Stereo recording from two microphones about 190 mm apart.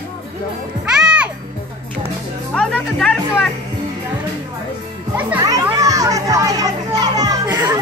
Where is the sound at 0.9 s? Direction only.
5° right (ahead or behind).